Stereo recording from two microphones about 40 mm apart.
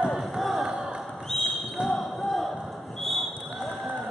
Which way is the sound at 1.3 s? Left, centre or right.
Centre.